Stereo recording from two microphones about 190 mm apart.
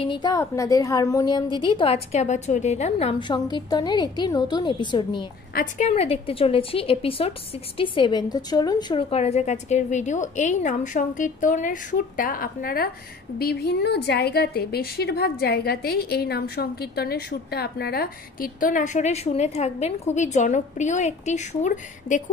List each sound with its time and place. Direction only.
0.0 s a woman's voice: 20° left (ahead or behind)
5.5 s a woman's voice: 45° left (ahead or behind)